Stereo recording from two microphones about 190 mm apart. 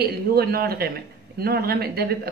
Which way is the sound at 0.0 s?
55° right (ahead or behind).